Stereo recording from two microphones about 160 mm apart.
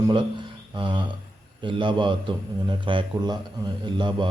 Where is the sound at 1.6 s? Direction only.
30° right (ahead or behind).